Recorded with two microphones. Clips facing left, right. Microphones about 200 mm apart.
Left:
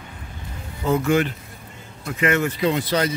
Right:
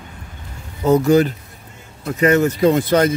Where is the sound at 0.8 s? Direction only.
40° right (ahead or behind).